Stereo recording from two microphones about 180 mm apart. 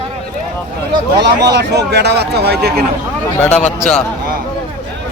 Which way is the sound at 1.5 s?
65° right (ahead or behind).